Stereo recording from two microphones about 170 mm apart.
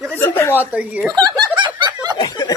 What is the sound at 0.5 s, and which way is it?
Speech, 10° right (ahead or behind).